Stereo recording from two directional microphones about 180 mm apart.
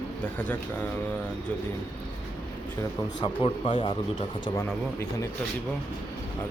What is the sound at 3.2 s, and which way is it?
Speech, 30° left (ahead or behind).